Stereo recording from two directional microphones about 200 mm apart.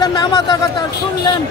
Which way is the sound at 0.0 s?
20° left (ahead or behind).